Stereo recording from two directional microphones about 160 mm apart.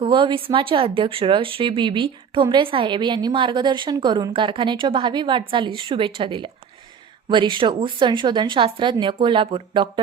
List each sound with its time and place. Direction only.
0.0 s a woman's voice: 30° right (ahead or behind)